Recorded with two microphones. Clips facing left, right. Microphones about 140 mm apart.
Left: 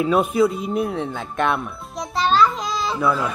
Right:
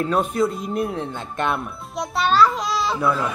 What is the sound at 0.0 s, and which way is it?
Speech, 10° left (ahead or behind).